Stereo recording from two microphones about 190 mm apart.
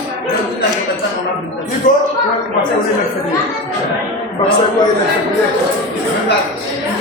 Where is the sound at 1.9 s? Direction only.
40° left (ahead or behind).